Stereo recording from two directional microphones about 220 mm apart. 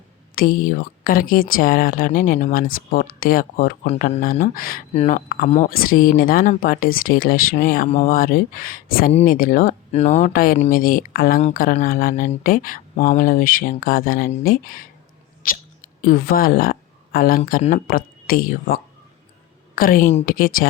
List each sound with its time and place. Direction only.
0.3 s speech: 40° left (ahead or behind)